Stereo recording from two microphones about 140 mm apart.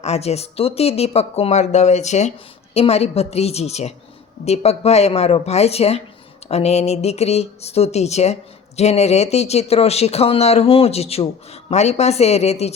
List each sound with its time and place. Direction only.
0.0 s speech: 50° left (ahead or behind)